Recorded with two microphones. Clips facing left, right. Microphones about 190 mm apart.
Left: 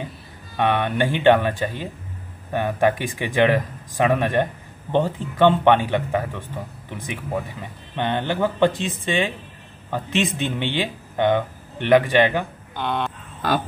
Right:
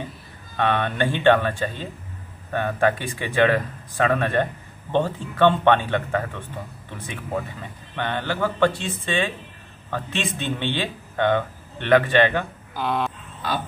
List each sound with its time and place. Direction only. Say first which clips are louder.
0.6 s speech: left 2 dB; 15° left (ahead or behind)
7.9 s speech: left 3 dB; 20° left (ahead or behind)
12.7 s speech: even; centre (ahead or behind)